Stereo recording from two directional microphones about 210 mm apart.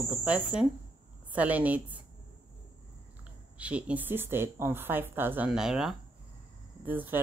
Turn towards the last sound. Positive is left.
turn(degrees=-10)  # may be behind; listen again after turning